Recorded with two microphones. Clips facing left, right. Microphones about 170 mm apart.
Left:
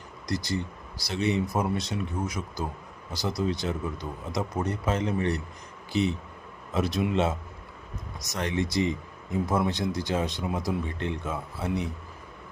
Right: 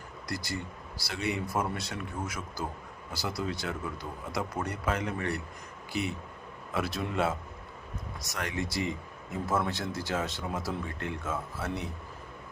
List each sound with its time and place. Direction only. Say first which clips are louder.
0.3 s a man's voice: left 6 dB; 20° left (ahead or behind)
6.7 s a man's voice: left 5 dB; 20° left (ahead or behind)